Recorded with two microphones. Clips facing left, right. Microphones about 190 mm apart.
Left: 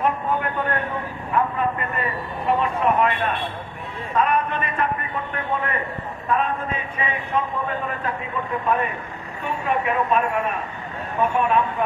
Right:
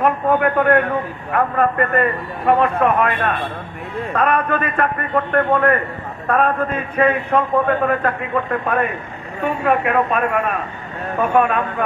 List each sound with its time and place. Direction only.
0.0 s a man's voice: 60° right (ahead or behind)